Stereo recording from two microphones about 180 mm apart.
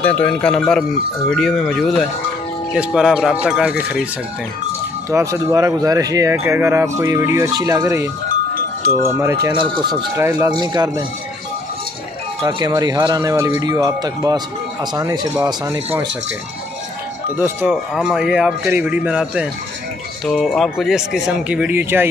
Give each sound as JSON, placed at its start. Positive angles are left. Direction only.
{"t": 0.0, "sound": "a man's voice", "side_deg": 10}
{"t": 5.1, "sound": "speech", "side_deg": -15}
{"t": 9.2, "sound": "speech", "side_deg": -15}
{"t": 9.5, "sound": "speech", "side_deg": -25}
{"t": 10.1, "sound": "speech", "side_deg": -15}
{"t": 12.4, "sound": "speech", "side_deg": -20}
{"t": 17.6, "sound": "a man's voice", "side_deg": -5}